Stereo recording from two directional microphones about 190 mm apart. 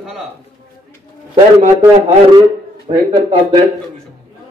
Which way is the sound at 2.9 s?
30° right (ahead or behind).